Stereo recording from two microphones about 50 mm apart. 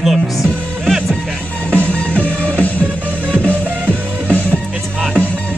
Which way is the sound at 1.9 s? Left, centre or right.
Left.